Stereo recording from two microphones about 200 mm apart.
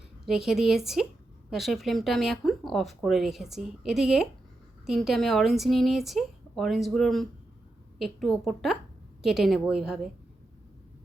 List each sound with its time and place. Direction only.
0.3 s speech: centre (ahead or behind)